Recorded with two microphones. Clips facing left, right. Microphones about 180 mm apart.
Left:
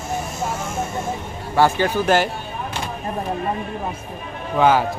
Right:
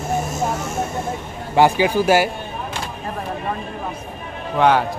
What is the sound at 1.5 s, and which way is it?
Speech, 15° right (ahead or behind).